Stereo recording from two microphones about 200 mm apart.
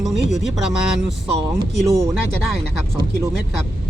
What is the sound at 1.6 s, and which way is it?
Speech, 15° right (ahead or behind).